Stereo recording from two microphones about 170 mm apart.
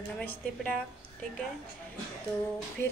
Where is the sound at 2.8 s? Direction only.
15° left (ahead or behind).